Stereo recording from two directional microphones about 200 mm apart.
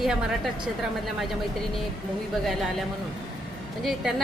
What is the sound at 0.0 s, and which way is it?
A woman's voice, centre (ahead or behind).